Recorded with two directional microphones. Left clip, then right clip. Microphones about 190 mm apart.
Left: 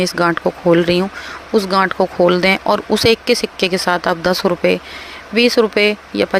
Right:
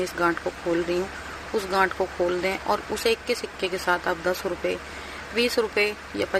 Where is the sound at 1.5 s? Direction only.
45° left (ahead or behind).